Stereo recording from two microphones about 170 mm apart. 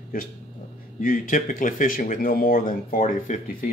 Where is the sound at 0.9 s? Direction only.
55° left (ahead or behind).